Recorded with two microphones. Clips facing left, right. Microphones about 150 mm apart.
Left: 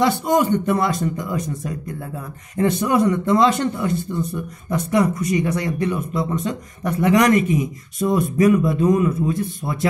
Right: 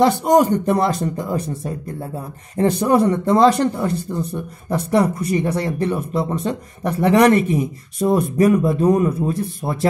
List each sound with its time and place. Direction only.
0.0 s speech: 40° right (ahead or behind)